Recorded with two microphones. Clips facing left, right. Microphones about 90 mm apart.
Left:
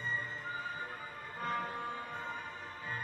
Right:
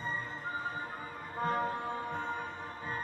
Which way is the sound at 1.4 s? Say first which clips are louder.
Right 5 dB; 25° right (ahead or behind).